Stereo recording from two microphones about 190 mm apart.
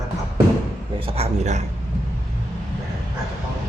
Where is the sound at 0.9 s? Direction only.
30° right (ahead or behind).